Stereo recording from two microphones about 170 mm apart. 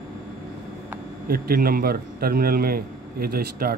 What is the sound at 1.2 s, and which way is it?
A man's voice, 60° right (ahead or behind).